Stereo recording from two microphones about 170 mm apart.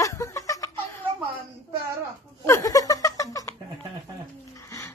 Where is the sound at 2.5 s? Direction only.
20° left (ahead or behind).